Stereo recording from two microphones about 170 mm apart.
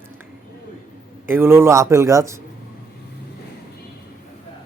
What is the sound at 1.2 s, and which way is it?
Speech, 15° right (ahead or behind).